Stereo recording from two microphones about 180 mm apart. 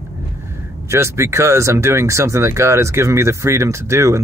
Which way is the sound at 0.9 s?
15° right (ahead or behind).